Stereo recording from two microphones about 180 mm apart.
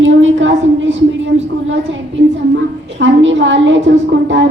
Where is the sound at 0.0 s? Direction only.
90° right.